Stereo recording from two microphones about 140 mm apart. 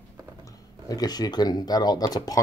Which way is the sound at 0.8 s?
30° left (ahead or behind).